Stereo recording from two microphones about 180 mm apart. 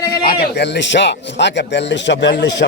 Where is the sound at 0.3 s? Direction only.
65° left (ahead or behind).